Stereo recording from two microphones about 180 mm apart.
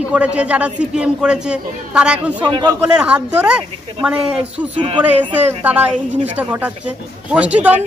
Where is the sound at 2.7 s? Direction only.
5° right (ahead or behind).